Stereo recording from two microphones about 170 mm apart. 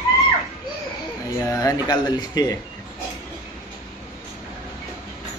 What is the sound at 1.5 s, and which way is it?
Speech, 20° left (ahead or behind).